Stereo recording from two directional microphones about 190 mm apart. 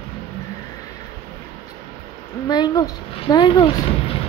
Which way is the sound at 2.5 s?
20° left (ahead or behind).